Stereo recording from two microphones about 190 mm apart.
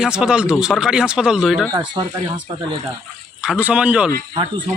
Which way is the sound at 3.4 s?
5° right (ahead or behind).